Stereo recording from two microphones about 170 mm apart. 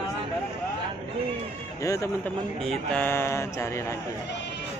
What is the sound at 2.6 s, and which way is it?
Speech, 5° left (ahead or behind).